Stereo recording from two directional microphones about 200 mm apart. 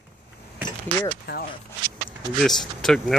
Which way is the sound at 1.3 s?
55° left (ahead or behind).